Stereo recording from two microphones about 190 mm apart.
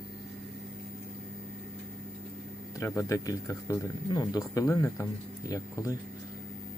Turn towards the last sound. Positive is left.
turn(degrees=15)  # may be behind; listen again after turning